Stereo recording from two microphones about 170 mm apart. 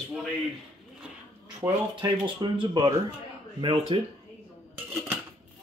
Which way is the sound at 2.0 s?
25° right (ahead or behind).